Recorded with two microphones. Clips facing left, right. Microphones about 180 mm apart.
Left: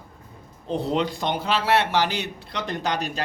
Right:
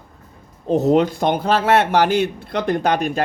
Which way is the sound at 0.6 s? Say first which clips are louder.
Right 9 dB; 45° right (ahead or behind).